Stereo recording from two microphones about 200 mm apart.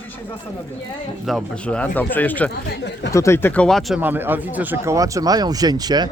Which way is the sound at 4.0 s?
10° right (ahead or behind).